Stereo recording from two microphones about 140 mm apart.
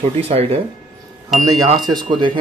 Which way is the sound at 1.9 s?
30° right (ahead or behind).